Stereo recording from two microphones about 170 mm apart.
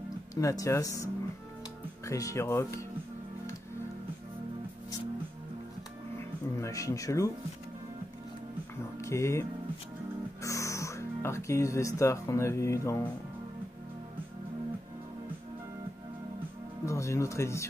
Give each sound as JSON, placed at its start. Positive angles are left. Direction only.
{"t": 0.3, "sound": "speech", "side_deg": 20}
{"t": 6.1, "sound": "music", "side_deg": 15}
{"t": 9.0, "sound": "speech", "side_deg": 15}
{"t": 16.8, "sound": "speech", "side_deg": 15}